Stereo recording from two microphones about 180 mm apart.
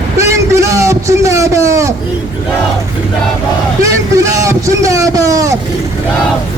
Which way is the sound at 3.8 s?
20° right (ahead or behind).